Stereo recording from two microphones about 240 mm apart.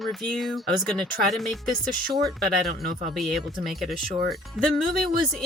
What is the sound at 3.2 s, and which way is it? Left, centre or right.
Speech, centre.